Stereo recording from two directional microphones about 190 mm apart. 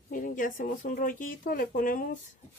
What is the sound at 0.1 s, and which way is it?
Speech, 45° left (ahead or behind).